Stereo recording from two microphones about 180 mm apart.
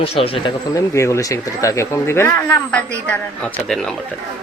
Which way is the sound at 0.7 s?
15° left (ahead or behind).